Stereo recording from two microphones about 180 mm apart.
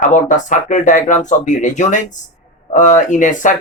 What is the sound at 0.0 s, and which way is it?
Speech, 45° left (ahead or behind).